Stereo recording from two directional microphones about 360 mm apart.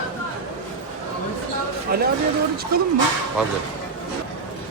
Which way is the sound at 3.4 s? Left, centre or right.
Centre.